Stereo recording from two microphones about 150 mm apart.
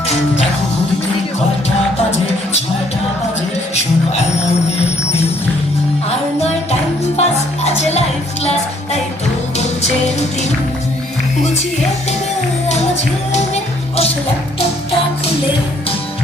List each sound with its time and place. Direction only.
6.1 s jingle bell: 45° left (ahead or behind)
7.2 s music: 45° left (ahead or behind)
13.3 s music: 50° left (ahead or behind)